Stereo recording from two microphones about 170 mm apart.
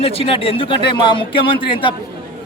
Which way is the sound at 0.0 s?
35° left (ahead or behind).